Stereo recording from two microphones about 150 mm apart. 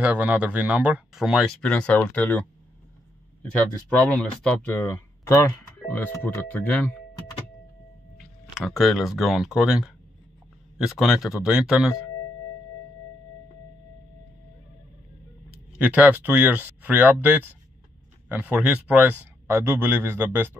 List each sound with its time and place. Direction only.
0.0 s speech: 10° right (ahead or behind); by 2.4 s 10° left (ahead or behind)
4.0 s speech: 5° left (ahead or behind)
8.5 s speech: centre (ahead or behind)
15.5 s speech: 10° right (ahead or behind)